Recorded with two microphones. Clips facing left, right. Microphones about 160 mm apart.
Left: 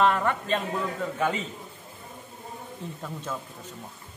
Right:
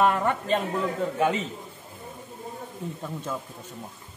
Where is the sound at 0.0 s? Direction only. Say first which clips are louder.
Right 1 dB; 15° right (ahead or behind).